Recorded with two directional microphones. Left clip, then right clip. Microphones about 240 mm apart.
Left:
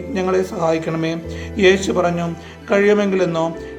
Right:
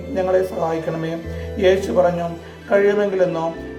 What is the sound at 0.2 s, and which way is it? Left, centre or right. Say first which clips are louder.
Speech: right 1 dB; left.